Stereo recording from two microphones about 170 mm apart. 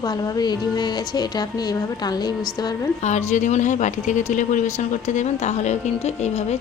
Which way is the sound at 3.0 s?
45° left (ahead or behind).